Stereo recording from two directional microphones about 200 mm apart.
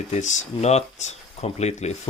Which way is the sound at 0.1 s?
35° left (ahead or behind).